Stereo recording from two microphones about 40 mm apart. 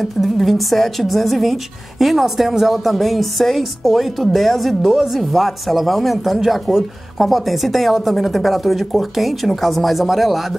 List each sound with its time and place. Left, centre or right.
0.0 s speech: centre